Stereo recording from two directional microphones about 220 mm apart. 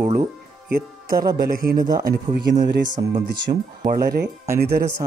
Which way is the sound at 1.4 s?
40° right (ahead or behind).